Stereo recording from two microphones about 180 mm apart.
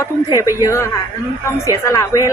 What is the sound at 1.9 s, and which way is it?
Speech, 15° left (ahead or behind).